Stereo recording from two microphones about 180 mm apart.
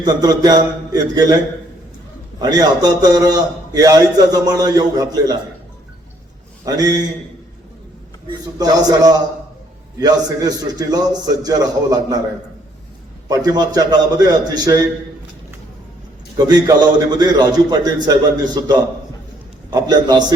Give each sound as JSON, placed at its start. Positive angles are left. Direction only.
{"t": 0.0, "sound": "a man's voice", "side_deg": -20}
{"t": 2.4, "sound": "a man's voice", "side_deg": -20}
{"t": 6.7, "sound": "a man's voice", "side_deg": -20}
{"t": 8.5, "sound": "a man's voice", "side_deg": -20}
{"t": 13.2, "sound": "a man's voice", "side_deg": -20}
{"t": 16.6, "sound": "a man's voice", "side_deg": -25}